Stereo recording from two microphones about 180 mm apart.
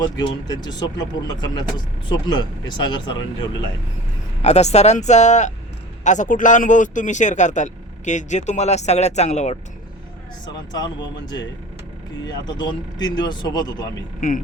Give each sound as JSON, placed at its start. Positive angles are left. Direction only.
{"t": 0.0, "sound": "speech", "side_deg": 25}
{"t": 4.4, "sound": "speech", "side_deg": 35}
{"t": 10.4, "sound": "speech", "side_deg": 25}
{"t": 14.2, "sound": "speech", "side_deg": 50}